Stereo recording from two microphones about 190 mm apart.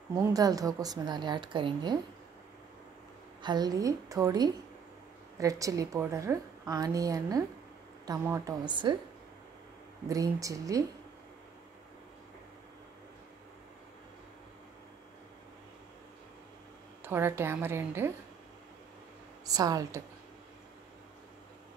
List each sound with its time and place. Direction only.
0.2 s a woman's voice: 20° right (ahead or behind)
3.4 s a woman's voice: 20° right (ahead or behind)
10.0 s a woman's voice: 15° right (ahead or behind)
17.0 s a woman's voice: 10° right (ahead or behind)
19.4 s a woman's voice: 20° right (ahead or behind)